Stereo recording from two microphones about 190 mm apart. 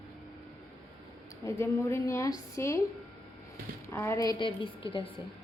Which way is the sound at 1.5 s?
15° left (ahead or behind).